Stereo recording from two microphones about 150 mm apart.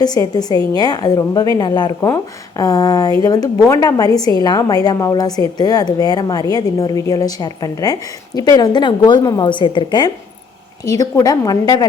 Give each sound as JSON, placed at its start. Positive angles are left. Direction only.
{"t": 0.0, "sound": "a woman's voice", "side_deg": 25}